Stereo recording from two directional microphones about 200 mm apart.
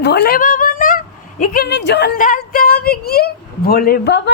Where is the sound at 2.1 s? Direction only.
40° left (ahead or behind).